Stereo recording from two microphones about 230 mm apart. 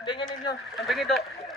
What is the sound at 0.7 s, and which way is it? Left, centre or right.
Speech, centre.